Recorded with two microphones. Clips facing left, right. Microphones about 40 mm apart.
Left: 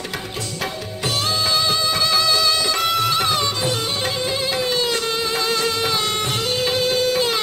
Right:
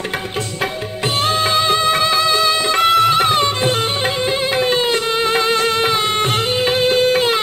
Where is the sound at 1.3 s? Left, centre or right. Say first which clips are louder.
Right 5 dB; right.